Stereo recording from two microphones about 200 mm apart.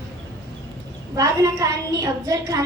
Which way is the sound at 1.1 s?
15° right (ahead or behind).